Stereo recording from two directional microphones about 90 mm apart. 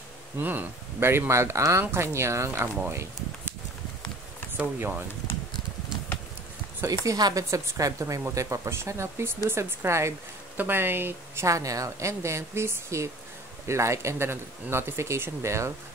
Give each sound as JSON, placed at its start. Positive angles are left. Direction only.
{"t": 0.4, "sound": "speech", "side_deg": -20}
{"t": 4.6, "sound": "speech", "side_deg": -20}
{"t": 6.8, "sound": "speech", "side_deg": -40}
{"t": 11.4, "sound": "speech", "side_deg": -35}